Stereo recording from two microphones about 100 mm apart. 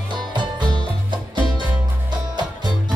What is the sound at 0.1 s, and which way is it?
Music, 50° right (ahead or behind).